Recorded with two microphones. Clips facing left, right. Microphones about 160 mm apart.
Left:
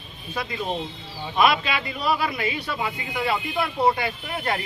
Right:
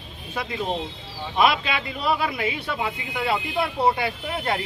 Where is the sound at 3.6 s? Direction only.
5° right (ahead or behind).